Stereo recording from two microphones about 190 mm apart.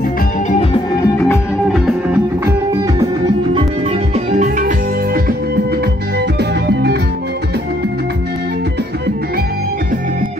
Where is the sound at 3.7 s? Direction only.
35° right (ahead or behind); by 7.0 s 60° right (ahead or behind).